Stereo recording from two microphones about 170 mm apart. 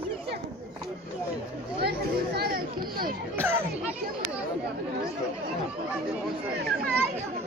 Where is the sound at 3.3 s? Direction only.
10° right (ahead or behind).